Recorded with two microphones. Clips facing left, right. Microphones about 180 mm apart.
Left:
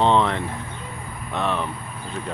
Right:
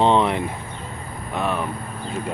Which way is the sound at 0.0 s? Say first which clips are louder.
Right 1 dB; 15° right (ahead or behind).